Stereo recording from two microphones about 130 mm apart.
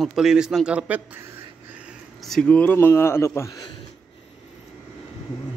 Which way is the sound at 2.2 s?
5° left (ahead or behind).